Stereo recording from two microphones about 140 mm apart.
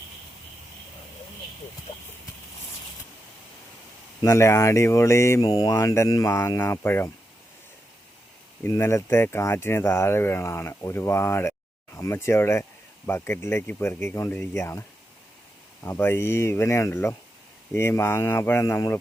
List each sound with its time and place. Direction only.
4.2 s speech: 20° left (ahead or behind)
8.6 s speech: 20° left (ahead or behind)